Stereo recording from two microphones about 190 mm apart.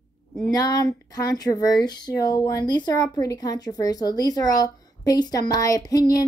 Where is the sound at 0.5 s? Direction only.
20° left (ahead or behind).